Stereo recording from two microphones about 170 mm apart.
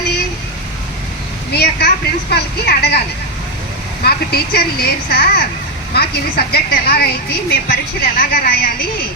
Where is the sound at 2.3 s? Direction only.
75° left (ahead or behind).